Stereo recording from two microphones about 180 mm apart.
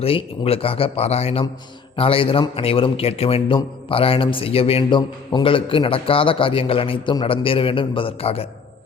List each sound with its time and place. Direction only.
0.0 s a man's voice: 30° left (ahead or behind)